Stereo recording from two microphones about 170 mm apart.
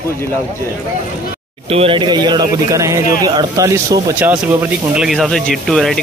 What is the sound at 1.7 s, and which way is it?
Speech, 30° right (ahead or behind).